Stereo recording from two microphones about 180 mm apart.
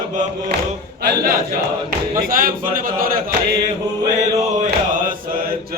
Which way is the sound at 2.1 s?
50° right (ahead or behind).